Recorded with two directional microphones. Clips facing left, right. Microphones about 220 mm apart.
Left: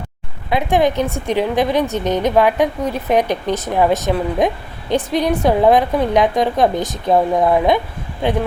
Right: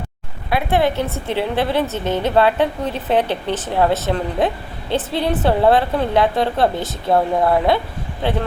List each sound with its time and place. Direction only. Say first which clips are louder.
0.5 s a woman's voice: left 2 dB; 15° left (ahead or behind)